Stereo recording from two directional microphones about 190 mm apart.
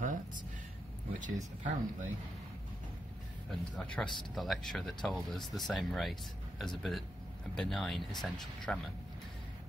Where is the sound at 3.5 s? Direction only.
5° left (ahead or behind).